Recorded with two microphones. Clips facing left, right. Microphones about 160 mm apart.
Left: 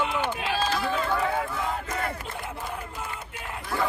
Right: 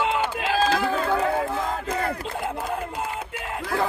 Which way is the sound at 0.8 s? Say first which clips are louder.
Right 4 dB; 40° right (ahead or behind).